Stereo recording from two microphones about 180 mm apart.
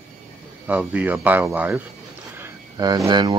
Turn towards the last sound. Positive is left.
turn(degrees=-20)  # may be behind; listen again after turning